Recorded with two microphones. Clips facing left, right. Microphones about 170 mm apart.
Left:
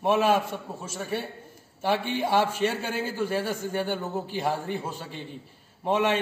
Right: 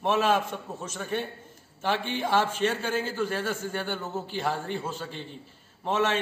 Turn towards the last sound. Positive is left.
turn(degrees=15)  # may be behind; listen again after turning